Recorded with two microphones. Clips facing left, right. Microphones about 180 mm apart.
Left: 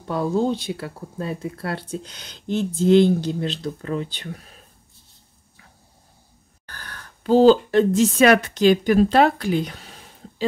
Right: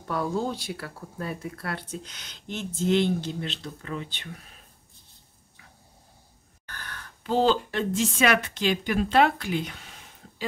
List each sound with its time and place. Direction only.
0.0 s speech: 20° left (ahead or behind); by 4.3 s 40° left (ahead or behind)
6.6 s speech: 35° left (ahead or behind)